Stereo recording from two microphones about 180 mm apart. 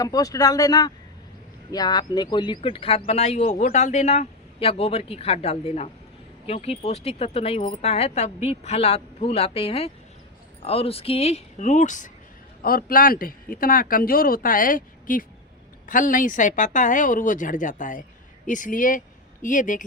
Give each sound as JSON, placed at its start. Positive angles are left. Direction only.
{"t": 0.0, "sound": "a man's voice", "side_deg": 20}